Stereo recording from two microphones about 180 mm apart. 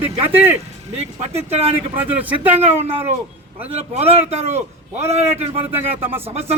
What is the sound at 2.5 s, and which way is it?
Speech, 35° right (ahead or behind).